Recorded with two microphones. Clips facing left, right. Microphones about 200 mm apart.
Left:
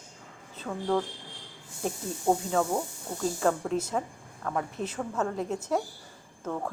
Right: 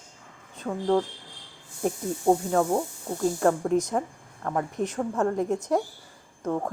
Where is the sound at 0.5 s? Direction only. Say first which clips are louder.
Right 4 dB; 15° right (ahead or behind).